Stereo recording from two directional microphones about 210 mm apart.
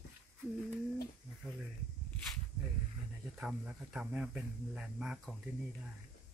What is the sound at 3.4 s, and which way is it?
Speech, 5° right (ahead or behind).